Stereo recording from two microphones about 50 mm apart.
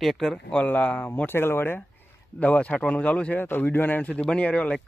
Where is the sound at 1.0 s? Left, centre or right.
Left.